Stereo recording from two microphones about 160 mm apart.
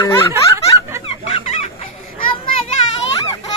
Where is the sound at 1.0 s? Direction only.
40° left (ahead or behind).